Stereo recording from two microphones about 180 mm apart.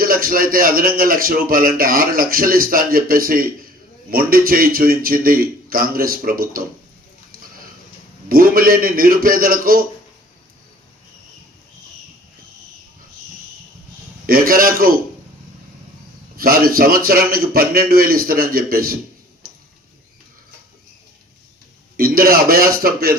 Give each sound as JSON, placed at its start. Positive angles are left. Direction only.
{"t": 0.0, "sound": "speech", "side_deg": -55}
{"t": 8.3, "sound": "speech", "side_deg": -55}
{"t": 14.3, "sound": "speech", "side_deg": -55}
{"t": 16.4, "sound": "a man's voice", "side_deg": -55}
{"t": 21.9, "sound": "a man's voice", "side_deg": -55}